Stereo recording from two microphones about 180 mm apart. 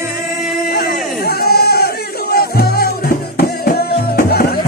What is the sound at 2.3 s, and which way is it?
Music, 55° left (ahead or behind).